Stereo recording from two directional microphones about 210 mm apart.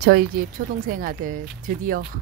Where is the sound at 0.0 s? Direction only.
45° right (ahead or behind).